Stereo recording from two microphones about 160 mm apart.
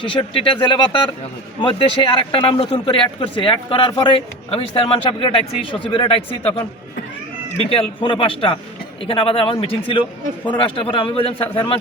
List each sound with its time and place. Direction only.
0.0 s a man's voice: 30° left (ahead or behind)
7.7 s a man's voice: 35° left (ahead or behind)